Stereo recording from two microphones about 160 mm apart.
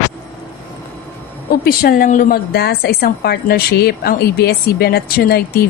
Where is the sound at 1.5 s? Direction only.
65° left (ahead or behind).